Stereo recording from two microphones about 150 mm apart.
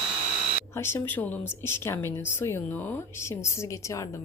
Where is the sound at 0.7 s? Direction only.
15° left (ahead or behind).